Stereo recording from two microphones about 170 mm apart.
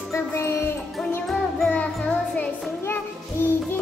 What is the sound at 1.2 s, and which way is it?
Music, centre (ahead or behind).